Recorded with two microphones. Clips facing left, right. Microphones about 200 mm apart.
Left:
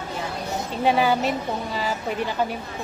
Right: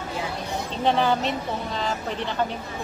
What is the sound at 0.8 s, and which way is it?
Speech, 10° left (ahead or behind).